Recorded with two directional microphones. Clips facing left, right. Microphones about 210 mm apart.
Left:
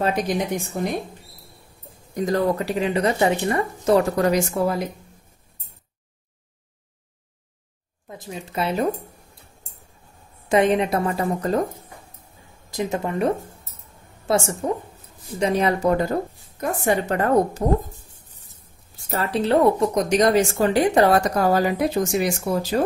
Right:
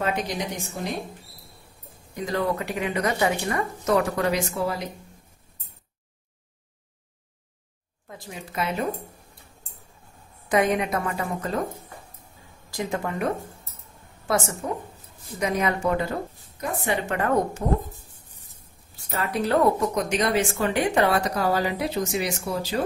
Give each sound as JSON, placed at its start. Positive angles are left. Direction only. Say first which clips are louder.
{"t": 2.1, "sound": "speech", "louder": "left 5 dB", "side_deg": 45}
{"t": 4.2, "sound": "a woman's voice", "louder": "left 5 dB", "side_deg": 45}
{"t": 8.1, "sound": "speech", "louder": "left 4 dB", "side_deg": 20}
{"t": 10.5, "sound": "speech", "louder": "left 4 dB", "side_deg": 25}
{"t": 12.7, "sound": "speech", "louder": "left 4 dB", "side_deg": 25}
{"t": 18.9, "sound": "a sound", "louder": "left 4 dB", "side_deg": 45}
{"t": 19.3, "sound": "speech", "louder": "left 3 dB", "side_deg": 25}
{"t": 19.9, "sound": "a woman's voice", "louder": "left 6 dB", "side_deg": 40}